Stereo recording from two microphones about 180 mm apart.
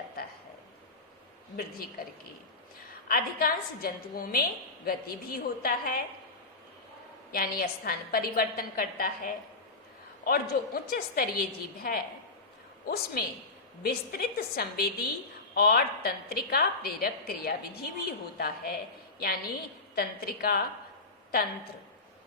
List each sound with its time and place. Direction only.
3.1 s a woman's voice: 55° left (ahead or behind)
7.3 s a woman's voice: 55° left (ahead or behind)
20.0 s a woman's voice: 60° left (ahead or behind)